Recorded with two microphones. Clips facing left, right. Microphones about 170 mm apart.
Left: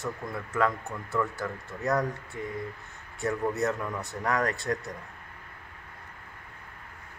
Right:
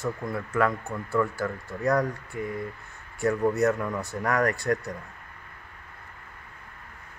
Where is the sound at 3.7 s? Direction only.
10° right (ahead or behind).